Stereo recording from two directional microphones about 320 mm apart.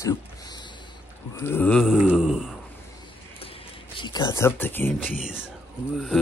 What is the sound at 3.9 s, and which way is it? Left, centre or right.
Speech, centre.